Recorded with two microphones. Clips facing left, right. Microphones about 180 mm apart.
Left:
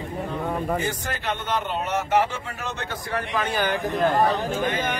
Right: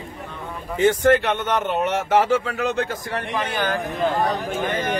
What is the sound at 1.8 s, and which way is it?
Speech, 85° right.